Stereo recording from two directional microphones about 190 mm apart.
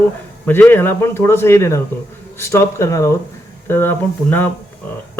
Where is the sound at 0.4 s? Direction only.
10° left (ahead or behind).